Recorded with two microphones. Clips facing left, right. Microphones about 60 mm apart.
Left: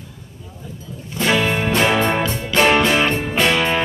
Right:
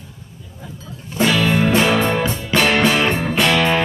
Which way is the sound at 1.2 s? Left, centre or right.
Centre.